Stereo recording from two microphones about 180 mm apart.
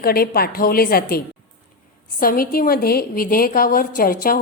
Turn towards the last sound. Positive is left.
turn(degrees=50)  # may be behind; listen again after turning